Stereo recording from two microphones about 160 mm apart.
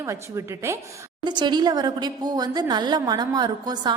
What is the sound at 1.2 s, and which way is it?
A woman's voice, 25° right (ahead or behind).